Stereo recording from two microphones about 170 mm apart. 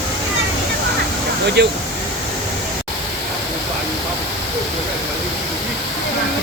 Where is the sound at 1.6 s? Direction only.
90° right.